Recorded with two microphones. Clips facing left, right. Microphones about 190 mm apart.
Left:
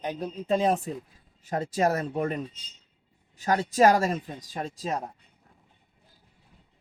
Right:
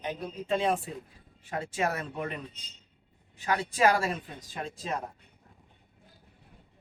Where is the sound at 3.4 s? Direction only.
40° left (ahead or behind).